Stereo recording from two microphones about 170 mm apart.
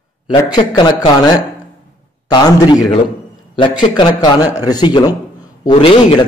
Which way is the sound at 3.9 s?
25° left (ahead or behind).